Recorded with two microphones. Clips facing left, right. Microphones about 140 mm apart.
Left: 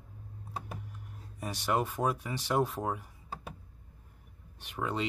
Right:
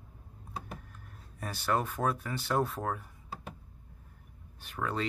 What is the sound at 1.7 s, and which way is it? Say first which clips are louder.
Speech: even; 15° left (ahead or behind).